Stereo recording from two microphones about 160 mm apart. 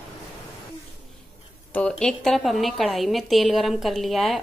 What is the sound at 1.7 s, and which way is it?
A woman's voice, 5° left (ahead or behind).